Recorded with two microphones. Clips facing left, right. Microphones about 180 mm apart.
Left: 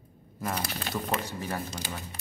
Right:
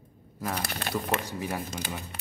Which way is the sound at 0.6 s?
60° right (ahead or behind).